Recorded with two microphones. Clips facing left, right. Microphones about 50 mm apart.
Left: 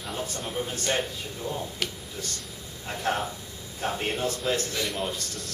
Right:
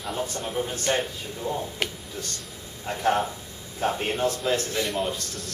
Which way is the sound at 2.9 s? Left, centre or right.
Centre.